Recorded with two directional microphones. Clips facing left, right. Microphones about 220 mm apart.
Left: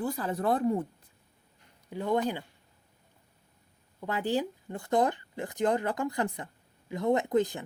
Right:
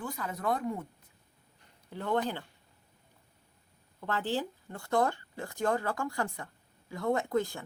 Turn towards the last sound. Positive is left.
turn(degrees=20)  # may be behind; listen again after turning